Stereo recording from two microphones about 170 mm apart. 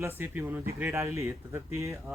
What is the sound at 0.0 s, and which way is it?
Speech, 10° right (ahead or behind).